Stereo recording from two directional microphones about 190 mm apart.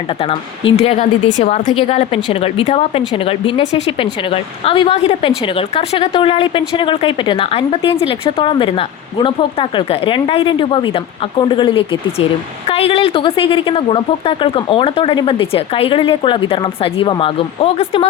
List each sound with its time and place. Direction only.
0.1 s a woman's voice: 30° left (ahead or behind)